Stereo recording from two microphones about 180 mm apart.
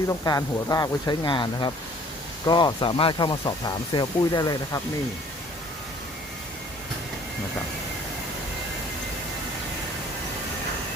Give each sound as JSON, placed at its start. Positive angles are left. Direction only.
{"t": 0.1, "sound": "speech", "side_deg": 20}